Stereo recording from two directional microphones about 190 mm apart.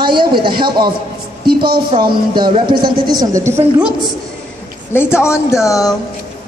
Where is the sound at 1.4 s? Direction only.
55° right (ahead or behind).